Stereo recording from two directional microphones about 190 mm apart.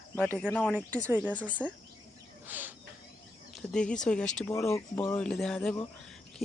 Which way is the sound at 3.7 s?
5° left (ahead or behind).